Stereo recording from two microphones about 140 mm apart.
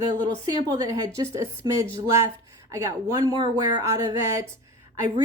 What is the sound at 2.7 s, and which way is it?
Speech, 20° right (ahead or behind).